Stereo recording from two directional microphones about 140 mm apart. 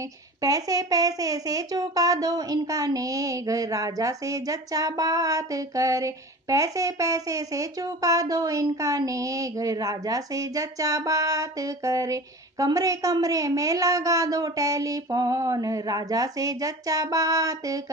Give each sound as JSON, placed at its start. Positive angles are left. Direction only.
{"t": 0.4, "sound": "speech", "side_deg": -25}